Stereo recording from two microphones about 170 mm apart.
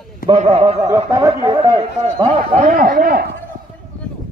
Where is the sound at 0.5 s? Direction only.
35° right (ahead or behind).